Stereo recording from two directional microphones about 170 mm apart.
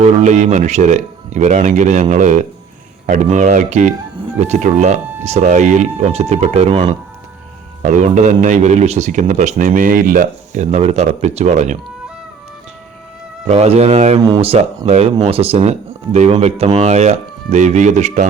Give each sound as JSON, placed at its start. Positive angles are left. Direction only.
{"t": 0.0, "sound": "a man's voice", "side_deg": -45}
{"t": 13.5, "sound": "speech", "side_deg": -40}
{"t": 14.2, "sound": "a man's voice", "side_deg": -25}